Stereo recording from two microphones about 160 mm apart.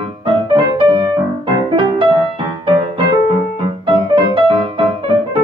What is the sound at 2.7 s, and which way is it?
Keyboard, 30° right (ahead or behind).